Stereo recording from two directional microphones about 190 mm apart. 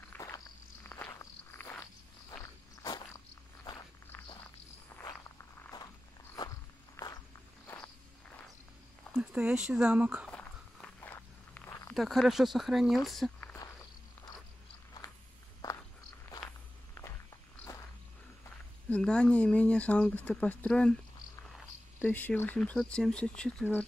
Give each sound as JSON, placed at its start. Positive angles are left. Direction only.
{"t": 0.1, "sound": "walk", "side_deg": 15}
{"t": 7.0, "sound": "walk", "side_deg": 10}
{"t": 9.1, "sound": "speech", "side_deg": -5}
{"t": 10.3, "sound": "walk", "side_deg": 10}
{"t": 11.9, "sound": "speech", "side_deg": 0}
{"t": 13.4, "sound": "a sound", "side_deg": 10}
{"t": 15.0, "sound": "walk", "side_deg": 20}
{"t": 18.9, "sound": "speech", "side_deg": 5}
{"t": 22.0, "sound": "speech", "side_deg": 10}